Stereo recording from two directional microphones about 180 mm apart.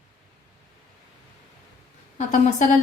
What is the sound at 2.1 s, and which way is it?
Speech, 40° left (ahead or behind).